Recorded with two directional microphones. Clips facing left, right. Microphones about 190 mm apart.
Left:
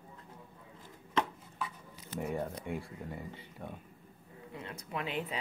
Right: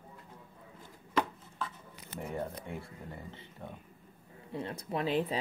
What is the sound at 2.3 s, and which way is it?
Speech, 15° left (ahead or behind).